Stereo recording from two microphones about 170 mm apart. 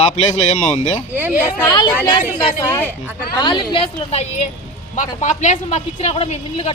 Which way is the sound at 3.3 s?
25° left (ahead or behind).